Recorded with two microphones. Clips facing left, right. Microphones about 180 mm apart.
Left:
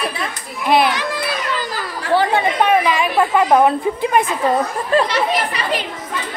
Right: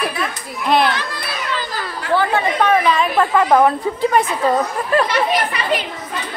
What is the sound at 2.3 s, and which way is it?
Speech, 15° left (ahead or behind).